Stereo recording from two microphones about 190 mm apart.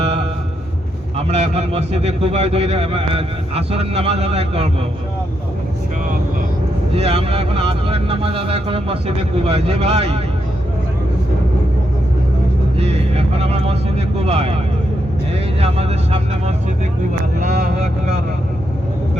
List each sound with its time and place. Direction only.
1.1 s a man's voice: 35° right (ahead or behind)
6.9 s a man's voice: 30° right (ahead or behind)
12.7 s vehicle: 30° right (ahead or behind)
15.6 s a man's voice: 35° right (ahead or behind)